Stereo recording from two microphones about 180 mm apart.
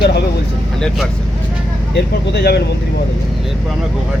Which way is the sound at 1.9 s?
65° left (ahead or behind).